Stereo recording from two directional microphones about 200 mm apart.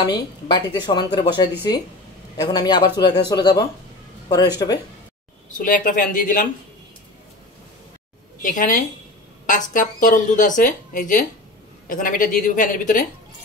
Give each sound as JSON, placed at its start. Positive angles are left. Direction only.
{"t": 0.0, "sound": "speech", "side_deg": 20}
{"t": 5.6, "sound": "speech", "side_deg": 45}
{"t": 8.4, "sound": "speech", "side_deg": 40}